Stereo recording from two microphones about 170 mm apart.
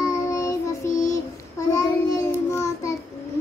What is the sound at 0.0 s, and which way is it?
Child singing, 20° left (ahead or behind).